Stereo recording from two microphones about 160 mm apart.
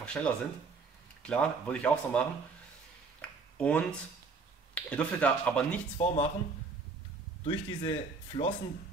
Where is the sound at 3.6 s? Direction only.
5° left (ahead or behind).